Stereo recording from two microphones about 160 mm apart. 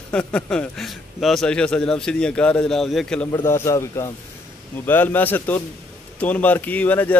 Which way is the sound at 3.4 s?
15° left (ahead or behind).